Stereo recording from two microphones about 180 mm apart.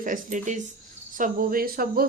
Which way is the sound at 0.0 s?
45° right (ahead or behind).